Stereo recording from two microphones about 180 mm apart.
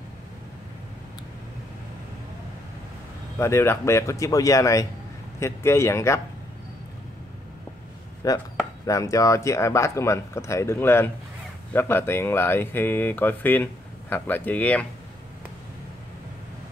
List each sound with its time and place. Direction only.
3.3 s speech: 15° left (ahead or behind)
8.2 s speech: 20° left (ahead or behind)